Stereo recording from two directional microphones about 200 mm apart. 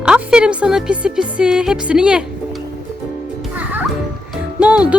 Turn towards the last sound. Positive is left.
turn(degrees=-5)  # may be behind; listen again after turning